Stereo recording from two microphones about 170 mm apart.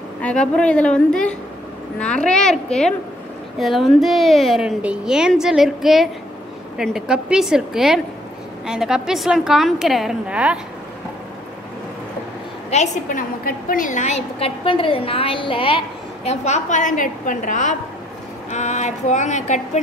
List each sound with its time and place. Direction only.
0.2 s a woman's voice: 5° left (ahead or behind)
12.7 s a woman's voice: 45° left (ahead or behind)
13.4 s a woman's voice: 60° left (ahead or behind); by 15.8 s 30° left (ahead or behind)
16.3 s a woman's voice: 40° left (ahead or behind)